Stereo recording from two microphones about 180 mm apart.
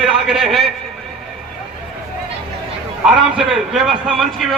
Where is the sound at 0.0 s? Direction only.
Centre (ahead or behind).